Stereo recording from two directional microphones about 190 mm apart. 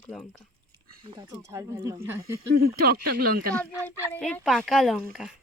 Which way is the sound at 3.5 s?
10° left (ahead or behind).